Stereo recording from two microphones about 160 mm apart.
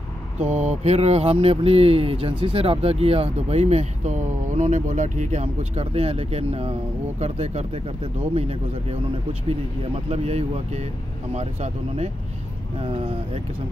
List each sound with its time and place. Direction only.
0.4 s speech: 45° right (ahead or behind)
10.0 s speech: 40° right (ahead or behind)